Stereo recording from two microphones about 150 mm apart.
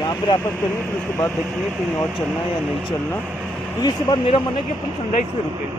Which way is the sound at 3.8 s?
35° left (ahead or behind).